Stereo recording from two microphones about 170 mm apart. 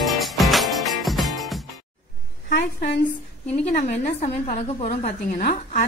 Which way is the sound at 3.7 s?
40° left (ahead or behind).